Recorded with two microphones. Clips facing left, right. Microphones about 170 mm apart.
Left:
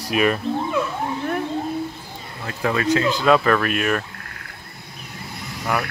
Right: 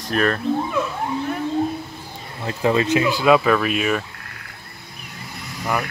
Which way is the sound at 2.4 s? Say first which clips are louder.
Right 3 dB; 25° right (ahead or behind).